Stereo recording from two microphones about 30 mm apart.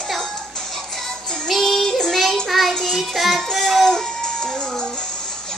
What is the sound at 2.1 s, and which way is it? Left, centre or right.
Child singing, centre.